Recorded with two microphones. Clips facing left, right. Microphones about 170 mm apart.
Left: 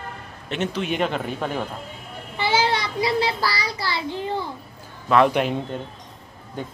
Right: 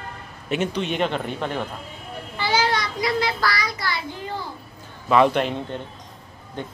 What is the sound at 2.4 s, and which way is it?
A child's voice, 25° left (ahead or behind).